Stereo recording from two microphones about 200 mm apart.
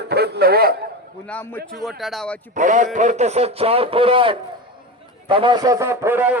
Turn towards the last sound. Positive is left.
turn(degrees=-10)  # may be behind; listen again after turning